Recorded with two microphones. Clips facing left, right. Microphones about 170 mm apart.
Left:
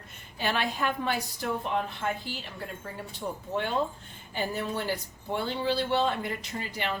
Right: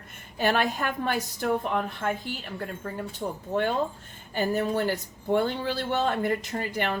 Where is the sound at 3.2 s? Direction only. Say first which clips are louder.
Right 4 dB; 40° right (ahead or behind).